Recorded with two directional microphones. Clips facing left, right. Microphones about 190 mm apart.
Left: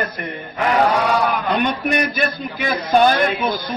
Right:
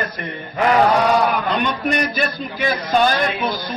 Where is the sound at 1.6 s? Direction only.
55° left (ahead or behind).